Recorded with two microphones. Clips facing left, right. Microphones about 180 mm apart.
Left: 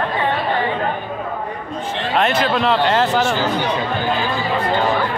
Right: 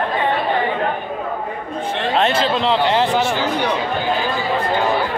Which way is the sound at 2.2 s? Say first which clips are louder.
Left 1 dB; 25° right (ahead or behind).